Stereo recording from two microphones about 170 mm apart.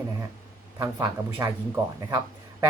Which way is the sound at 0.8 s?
20° right (ahead or behind).